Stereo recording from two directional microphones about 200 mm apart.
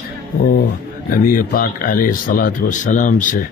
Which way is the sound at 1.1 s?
45° left (ahead or behind).